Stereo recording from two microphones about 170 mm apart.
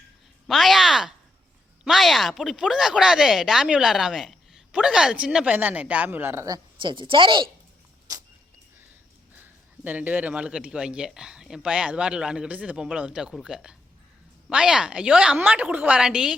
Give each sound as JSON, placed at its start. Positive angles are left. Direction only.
{"t": 0.4, "sound": "speech", "side_deg": 0}
{"t": 8.1, "sound": "arrow", "side_deg": -20}
{"t": 9.4, "sound": "speech", "side_deg": -10}